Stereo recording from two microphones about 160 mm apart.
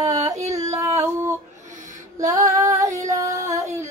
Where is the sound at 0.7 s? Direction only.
15° right (ahead or behind).